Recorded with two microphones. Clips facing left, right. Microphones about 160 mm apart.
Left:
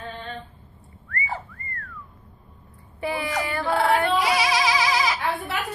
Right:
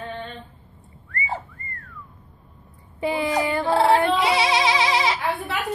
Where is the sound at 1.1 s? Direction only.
20° right (ahead or behind).